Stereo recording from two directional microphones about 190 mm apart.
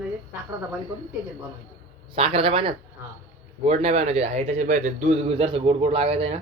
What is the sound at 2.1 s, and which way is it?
A man's voice, 30° right (ahead or behind).